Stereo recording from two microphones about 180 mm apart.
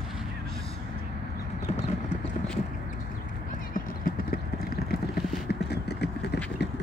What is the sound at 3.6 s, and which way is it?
Clip-clop, 50° left (ahead or behind).